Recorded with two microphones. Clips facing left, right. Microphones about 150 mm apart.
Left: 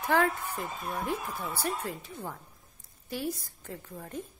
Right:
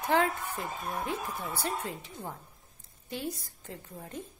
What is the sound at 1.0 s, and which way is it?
A woman's voice, 20° right (ahead or behind).